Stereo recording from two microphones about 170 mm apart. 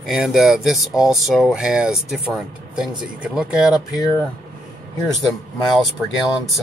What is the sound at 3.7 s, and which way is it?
Speech, 20° left (ahead or behind).